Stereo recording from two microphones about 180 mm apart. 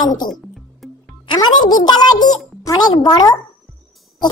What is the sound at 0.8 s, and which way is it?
Music, centre (ahead or behind).